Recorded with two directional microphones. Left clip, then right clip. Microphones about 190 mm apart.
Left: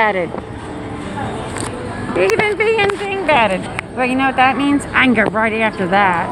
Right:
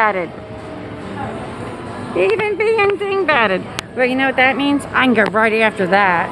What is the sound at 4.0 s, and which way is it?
A woman's voice, 20° right (ahead or behind).